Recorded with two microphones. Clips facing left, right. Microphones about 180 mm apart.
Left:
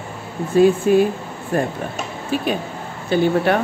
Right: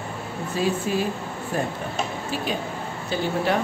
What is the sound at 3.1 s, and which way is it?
Speech, 60° left (ahead or behind).